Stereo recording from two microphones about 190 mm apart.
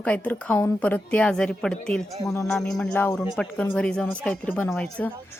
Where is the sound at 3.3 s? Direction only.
5° left (ahead or behind).